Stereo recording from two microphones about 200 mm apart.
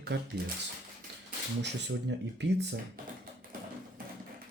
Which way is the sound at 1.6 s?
60° right (ahead or behind).